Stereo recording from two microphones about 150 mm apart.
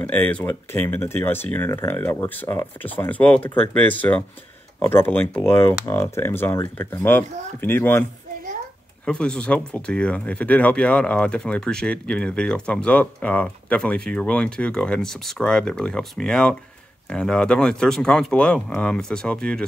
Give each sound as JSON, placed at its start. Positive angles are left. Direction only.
{"t": 0.0, "sound": "speech", "side_deg": 10}
{"t": 9.0, "sound": "speech", "side_deg": 5}